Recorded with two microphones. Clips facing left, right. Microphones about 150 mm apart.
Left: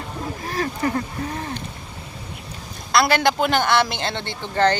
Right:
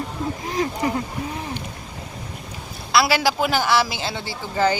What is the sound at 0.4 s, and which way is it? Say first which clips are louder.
Speech: even; 20° right (ahead or behind).